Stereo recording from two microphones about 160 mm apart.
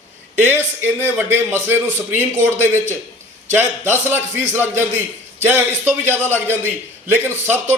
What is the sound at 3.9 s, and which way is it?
Speech, 15° right (ahead or behind).